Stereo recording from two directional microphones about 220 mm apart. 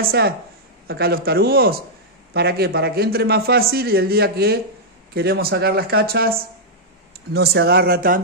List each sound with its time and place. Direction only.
0.0 s a man's voice: 45° right (ahead or behind)
7.3 s a man's voice: 45° right (ahead or behind)